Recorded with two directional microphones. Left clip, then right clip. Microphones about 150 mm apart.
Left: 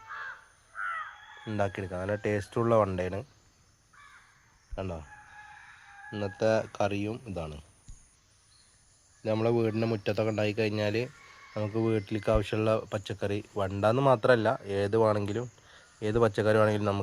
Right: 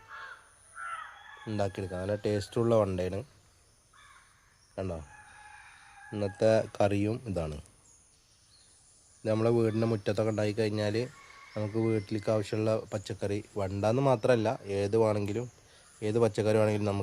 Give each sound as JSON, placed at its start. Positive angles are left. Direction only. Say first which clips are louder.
{"t": 1.5, "sound": "a man's voice", "louder": "left 2 dB", "side_deg": 0}
{"t": 4.7, "sound": "speech", "louder": "even", "side_deg": -15}
{"t": 6.1, "sound": "speech", "louder": "right 1 dB", "side_deg": -15}
{"t": 9.2, "sound": "a man's voice", "louder": "even", "side_deg": -20}